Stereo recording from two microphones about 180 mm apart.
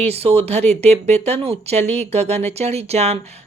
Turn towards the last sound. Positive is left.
turn(degrees=-35)  # may be behind; listen again after turning